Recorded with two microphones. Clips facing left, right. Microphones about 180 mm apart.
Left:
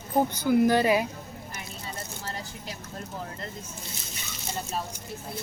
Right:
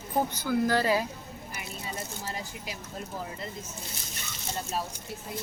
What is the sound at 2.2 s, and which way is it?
Speech, 10° right (ahead or behind).